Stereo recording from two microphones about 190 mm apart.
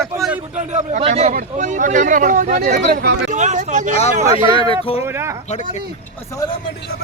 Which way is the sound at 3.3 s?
40° right (ahead or behind).